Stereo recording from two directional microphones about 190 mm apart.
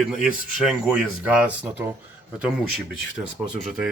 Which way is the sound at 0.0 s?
5° right (ahead or behind).